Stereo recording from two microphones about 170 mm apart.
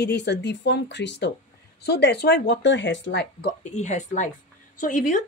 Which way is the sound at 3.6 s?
45° left (ahead or behind).